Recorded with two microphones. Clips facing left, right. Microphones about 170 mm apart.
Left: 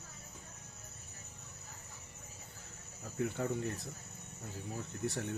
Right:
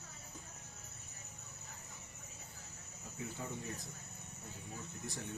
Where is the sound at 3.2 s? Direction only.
60° left (ahead or behind).